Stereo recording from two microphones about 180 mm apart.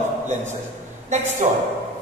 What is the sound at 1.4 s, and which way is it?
Speech, 40° right (ahead or behind).